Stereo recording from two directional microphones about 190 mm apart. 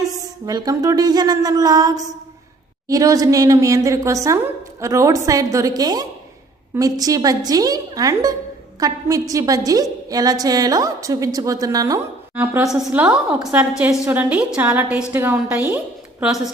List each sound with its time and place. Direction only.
0.0 s music: 20° right (ahead or behind)
2.8 s a woman's voice: 20° right (ahead or behind)
12.3 s a woman's voice: 10° right (ahead or behind)